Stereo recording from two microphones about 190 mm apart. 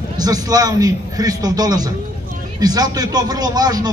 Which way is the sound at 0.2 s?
20° right (ahead or behind).